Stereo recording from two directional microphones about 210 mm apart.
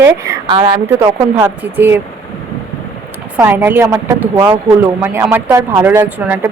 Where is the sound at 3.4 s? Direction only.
10° right (ahead or behind).